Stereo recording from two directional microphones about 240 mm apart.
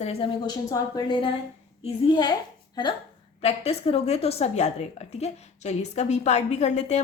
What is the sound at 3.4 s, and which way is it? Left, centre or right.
A woman's voice, left.